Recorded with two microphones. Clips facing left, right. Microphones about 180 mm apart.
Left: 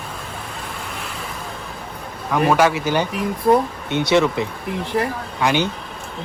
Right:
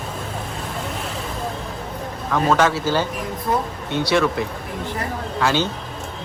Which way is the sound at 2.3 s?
15° left (ahead or behind).